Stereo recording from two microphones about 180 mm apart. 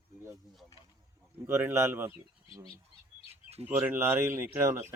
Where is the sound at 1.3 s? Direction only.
10° right (ahead or behind).